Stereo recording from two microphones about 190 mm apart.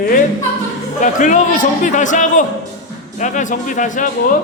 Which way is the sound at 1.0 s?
40° left (ahead or behind).